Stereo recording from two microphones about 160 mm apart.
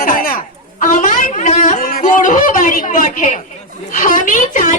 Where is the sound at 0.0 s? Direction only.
60° left (ahead or behind).